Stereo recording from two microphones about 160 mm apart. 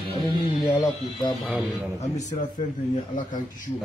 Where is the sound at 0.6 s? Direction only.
25° left (ahead or behind).